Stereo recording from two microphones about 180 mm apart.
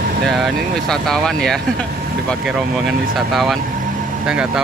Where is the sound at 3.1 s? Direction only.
Centre (ahead or behind).